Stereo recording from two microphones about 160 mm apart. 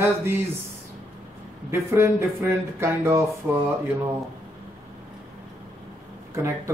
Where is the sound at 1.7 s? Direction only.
15° right (ahead or behind).